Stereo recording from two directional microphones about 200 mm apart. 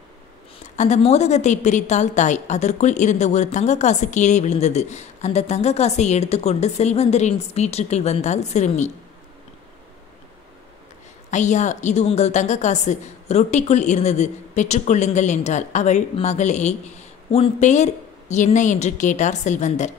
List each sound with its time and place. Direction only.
0.7 s a woman's voice: 35° left (ahead or behind)
11.2 s a woman's voice: 35° left (ahead or behind)